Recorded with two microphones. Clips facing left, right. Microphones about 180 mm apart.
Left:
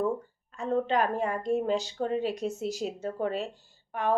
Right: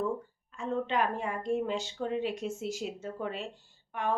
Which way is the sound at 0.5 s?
40° left (ahead or behind).